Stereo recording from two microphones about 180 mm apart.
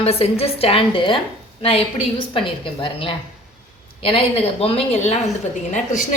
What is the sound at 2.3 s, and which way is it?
A woman's voice, 30° left (ahead or behind).